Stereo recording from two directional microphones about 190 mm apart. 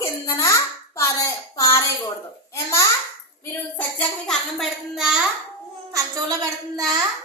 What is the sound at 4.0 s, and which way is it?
A child's voice, 5° left (ahead or behind).